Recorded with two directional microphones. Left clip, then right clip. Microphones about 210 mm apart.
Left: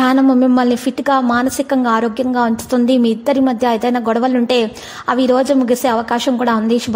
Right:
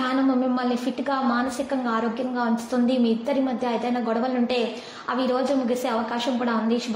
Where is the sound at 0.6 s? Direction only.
45° left (ahead or behind).